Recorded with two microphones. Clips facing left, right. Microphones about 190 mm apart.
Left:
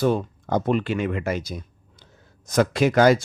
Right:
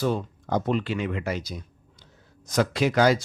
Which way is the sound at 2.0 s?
50° left (ahead or behind).